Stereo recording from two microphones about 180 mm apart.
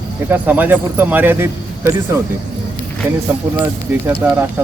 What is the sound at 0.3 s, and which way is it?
Speech, 10° right (ahead or behind).